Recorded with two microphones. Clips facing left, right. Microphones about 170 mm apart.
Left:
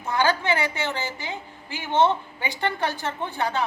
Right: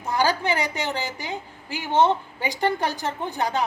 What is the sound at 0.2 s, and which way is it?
A woman's voice, 35° right (ahead or behind).